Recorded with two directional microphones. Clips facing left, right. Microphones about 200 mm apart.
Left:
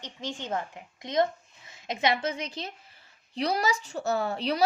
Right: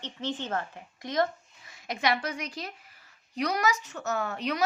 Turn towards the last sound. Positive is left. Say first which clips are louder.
# left 3 dB
turn(degrees=30)  # may be behind; listen again after turning